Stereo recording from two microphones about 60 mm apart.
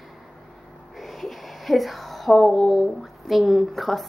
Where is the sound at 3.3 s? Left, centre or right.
Centre.